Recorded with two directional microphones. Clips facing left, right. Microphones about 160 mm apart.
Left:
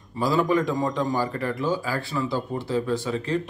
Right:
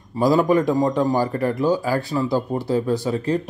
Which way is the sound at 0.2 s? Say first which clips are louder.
Right 5 dB; 45° right (ahead or behind).